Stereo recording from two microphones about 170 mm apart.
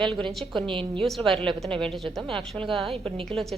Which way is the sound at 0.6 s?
30° right (ahead or behind).